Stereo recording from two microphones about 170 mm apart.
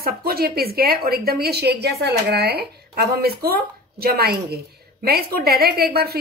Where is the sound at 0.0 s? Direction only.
65° right (ahead or behind).